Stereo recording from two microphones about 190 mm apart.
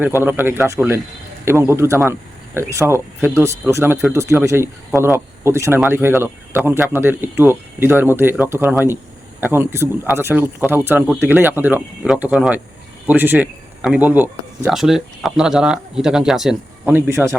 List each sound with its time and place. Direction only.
0.0 s speech: 10° right (ahead or behind)